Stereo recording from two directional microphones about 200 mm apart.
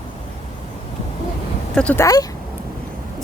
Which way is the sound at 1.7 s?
5° left (ahead or behind).